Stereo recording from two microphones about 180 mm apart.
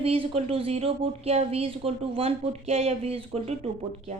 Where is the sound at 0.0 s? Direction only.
30° right (ahead or behind).